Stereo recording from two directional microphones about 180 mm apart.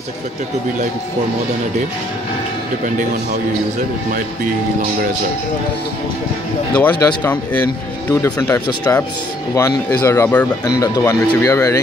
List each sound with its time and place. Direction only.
6.8 s speech: 10° left (ahead or behind)